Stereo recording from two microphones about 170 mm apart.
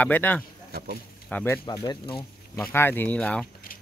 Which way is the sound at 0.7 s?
65° right (ahead or behind).